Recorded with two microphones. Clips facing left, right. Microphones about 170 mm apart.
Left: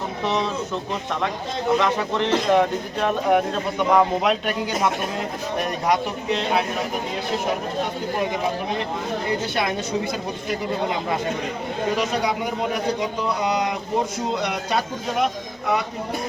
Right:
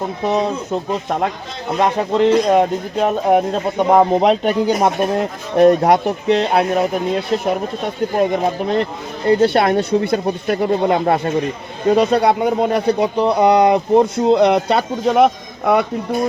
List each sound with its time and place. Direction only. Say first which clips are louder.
0.3 s speech: right 6 dB; 50° right (ahead or behind)
8.2 s speech: right 8 dB; 55° right (ahead or behind)